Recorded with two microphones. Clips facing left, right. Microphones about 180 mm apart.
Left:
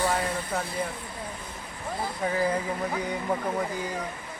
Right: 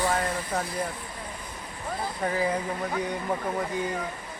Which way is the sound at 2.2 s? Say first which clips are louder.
Left 1 dB; centre (ahead or behind).